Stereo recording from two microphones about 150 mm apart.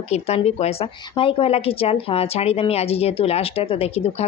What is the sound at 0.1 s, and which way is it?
A woman's voice, 45° left (ahead or behind).